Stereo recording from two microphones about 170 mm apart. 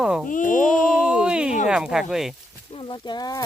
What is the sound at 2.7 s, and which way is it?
Speech, 30° left (ahead or behind).